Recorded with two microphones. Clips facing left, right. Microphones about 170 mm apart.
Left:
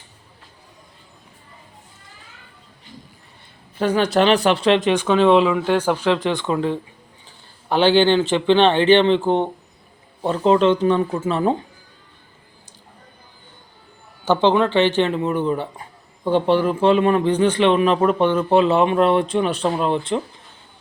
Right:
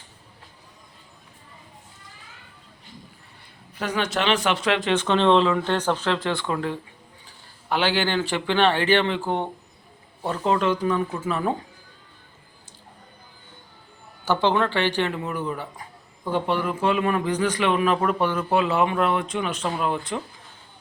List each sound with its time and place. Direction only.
3.8 s speech: 30° left (ahead or behind)
4.9 s speech: 10° left (ahead or behind); by 11.5 s 25° left (ahead or behind)
14.3 s speech: 20° left (ahead or behind)